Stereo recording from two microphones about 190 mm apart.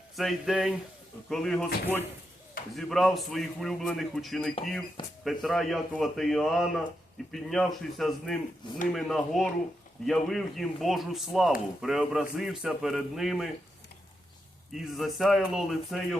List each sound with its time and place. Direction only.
0.2 s a man's voice: centre (ahead or behind)
14.7 s a man's voice: centre (ahead or behind)